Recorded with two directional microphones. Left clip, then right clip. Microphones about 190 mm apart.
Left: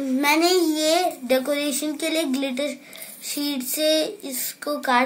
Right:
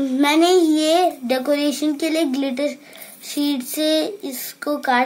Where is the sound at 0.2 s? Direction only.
40° right (ahead or behind).